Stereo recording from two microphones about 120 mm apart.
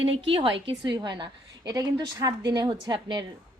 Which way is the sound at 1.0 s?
35° right (ahead or behind).